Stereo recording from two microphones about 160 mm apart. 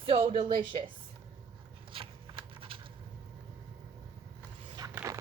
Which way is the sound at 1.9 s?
35° right (ahead or behind).